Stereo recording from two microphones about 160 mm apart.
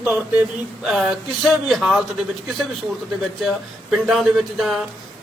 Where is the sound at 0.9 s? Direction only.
Centre (ahead or behind).